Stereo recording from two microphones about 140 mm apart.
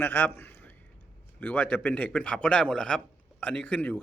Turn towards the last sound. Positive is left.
turn(degrees=15)  # may be behind; listen again after turning